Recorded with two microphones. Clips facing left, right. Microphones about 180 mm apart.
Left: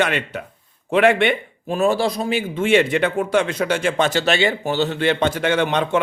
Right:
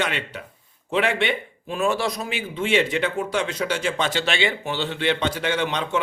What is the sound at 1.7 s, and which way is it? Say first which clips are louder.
A man's voice: left 5 dB; 35° left (ahead or behind).